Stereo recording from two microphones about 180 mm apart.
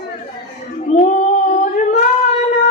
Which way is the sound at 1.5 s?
40° left (ahead or behind).